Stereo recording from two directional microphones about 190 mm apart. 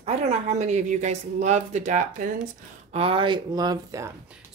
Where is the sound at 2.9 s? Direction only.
30° right (ahead or behind).